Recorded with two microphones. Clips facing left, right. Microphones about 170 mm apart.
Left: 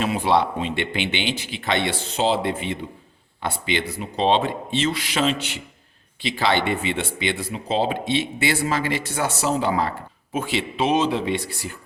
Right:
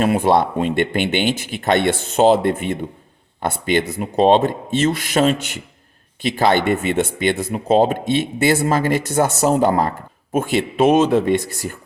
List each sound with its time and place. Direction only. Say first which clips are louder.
0.0 s speech: right 5 dB; 50° right (ahead or behind)